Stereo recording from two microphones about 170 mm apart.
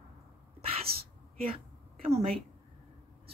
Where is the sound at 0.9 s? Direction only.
65° right (ahead or behind).